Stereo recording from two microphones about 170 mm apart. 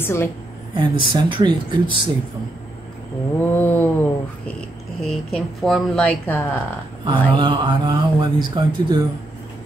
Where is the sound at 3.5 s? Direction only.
10° left (ahead or behind).